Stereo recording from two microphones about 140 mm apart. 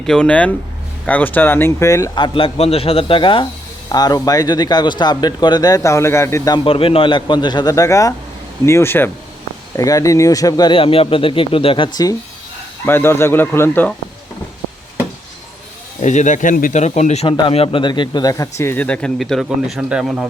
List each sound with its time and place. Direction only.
0.0 s speech: 5° left (ahead or behind); by 2.0 s 20° left (ahead or behind)
2.1 s speech: 35° left (ahead or behind)
3.8 s speech: 30° left (ahead or behind)
6.7 s speech: 40° left (ahead or behind)
12.8 s speech: 15° left (ahead or behind)
16.0 s speech: 60° left (ahead or behind); by 16.8 s 75° left (ahead or behind)
16.8 s speech: 55° left (ahead or behind)
17.2 s speech: 40° left (ahead or behind); by 20.2 s 5° right (ahead or behind)